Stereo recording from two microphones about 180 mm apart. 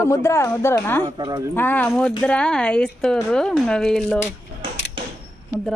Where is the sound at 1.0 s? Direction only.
25° right (ahead or behind).